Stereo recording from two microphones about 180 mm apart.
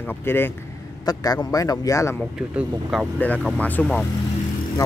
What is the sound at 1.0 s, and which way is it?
Speech, 20° left (ahead or behind).